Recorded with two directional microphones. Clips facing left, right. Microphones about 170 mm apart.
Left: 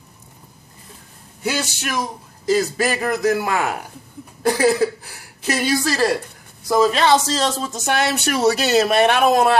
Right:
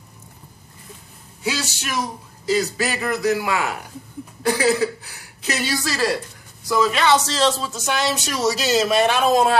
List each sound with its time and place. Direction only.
1.4 s a man's voice: 55° left (ahead or behind)
6.7 s speech: 35° left (ahead or behind); by 9.5 s 60° left (ahead or behind)